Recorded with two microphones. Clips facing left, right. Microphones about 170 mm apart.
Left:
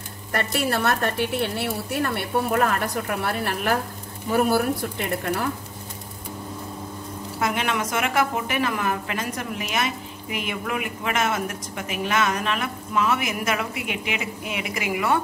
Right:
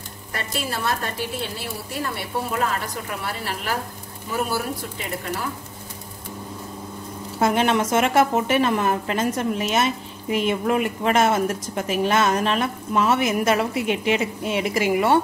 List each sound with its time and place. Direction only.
0.3 s a woman's voice: 60° left (ahead or behind)
7.3 s a woman's voice: 30° right (ahead or behind)